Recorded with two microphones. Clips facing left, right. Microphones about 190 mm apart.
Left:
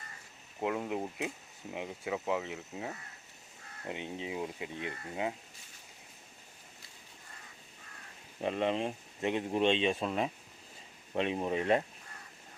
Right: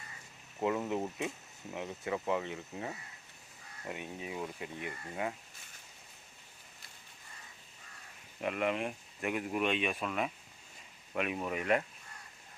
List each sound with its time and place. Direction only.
0.8 s speech: 10° left (ahead or behind)
3.8 s speech: 20° left (ahead or behind)
8.4 s speech: 30° left (ahead or behind)